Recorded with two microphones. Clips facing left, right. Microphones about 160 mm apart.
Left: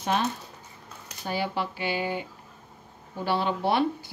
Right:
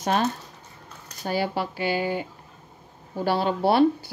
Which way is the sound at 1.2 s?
40° right (ahead or behind).